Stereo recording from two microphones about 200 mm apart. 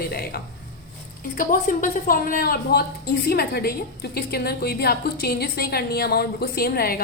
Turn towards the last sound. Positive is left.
turn(degrees=50)  # may be behind; listen again after turning